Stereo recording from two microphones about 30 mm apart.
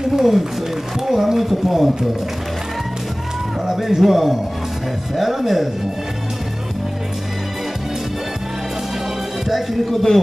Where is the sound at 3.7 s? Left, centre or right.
Centre.